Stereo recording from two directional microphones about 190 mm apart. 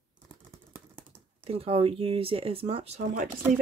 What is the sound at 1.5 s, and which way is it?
Speech, 30° right (ahead or behind).